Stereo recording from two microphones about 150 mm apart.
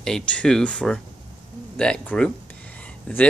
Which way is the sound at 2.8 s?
10° left (ahead or behind).